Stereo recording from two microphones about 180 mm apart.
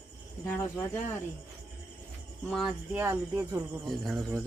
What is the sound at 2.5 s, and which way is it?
Speech, centre (ahead or behind).